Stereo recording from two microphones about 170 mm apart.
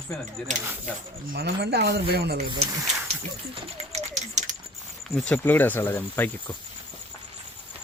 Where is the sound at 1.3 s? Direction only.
80° right.